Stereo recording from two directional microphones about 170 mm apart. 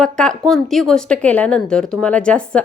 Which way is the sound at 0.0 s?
5° left (ahead or behind).